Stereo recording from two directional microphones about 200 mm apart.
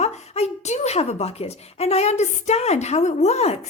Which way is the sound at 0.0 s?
35° left (ahead or behind).